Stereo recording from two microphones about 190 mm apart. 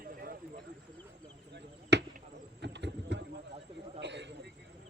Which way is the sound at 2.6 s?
65° right (ahead or behind).